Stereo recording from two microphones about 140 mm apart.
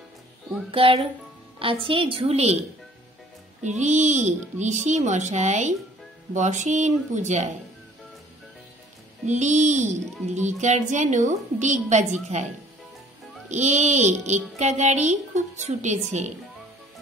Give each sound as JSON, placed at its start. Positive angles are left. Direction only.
{"t": 0.7, "sound": "a woman's voice", "side_deg": -40}
{"t": 3.6, "sound": "a woman's voice", "side_deg": -55}
{"t": 9.2, "sound": "a woman's voice", "side_deg": -55}
{"t": 13.5, "sound": "a woman's voice", "side_deg": -55}